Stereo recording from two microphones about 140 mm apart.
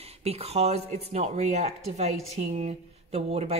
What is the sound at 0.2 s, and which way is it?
A woman's voice, 45° right (ahead or behind).